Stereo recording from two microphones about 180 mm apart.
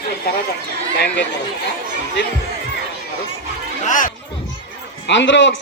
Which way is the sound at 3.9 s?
45° left (ahead or behind).